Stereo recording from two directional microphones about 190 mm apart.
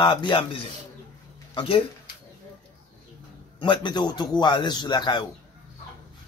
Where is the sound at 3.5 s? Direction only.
25° left (ahead or behind).